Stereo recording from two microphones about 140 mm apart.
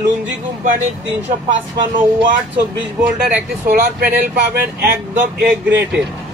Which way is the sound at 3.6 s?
90° right.